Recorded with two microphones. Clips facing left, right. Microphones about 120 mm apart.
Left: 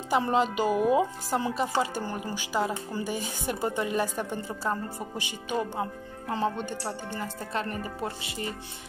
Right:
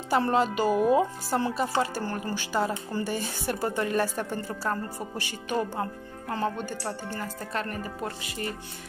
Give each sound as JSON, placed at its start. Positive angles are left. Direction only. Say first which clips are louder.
{"t": 0.1, "sound": "speech", "louder": "right 1 dB", "side_deg": 15}